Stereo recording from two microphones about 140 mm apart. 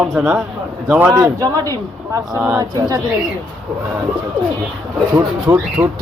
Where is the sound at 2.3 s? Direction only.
15° right (ahead or behind).